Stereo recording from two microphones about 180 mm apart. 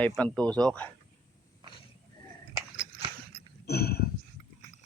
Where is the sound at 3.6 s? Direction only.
60° left (ahead or behind).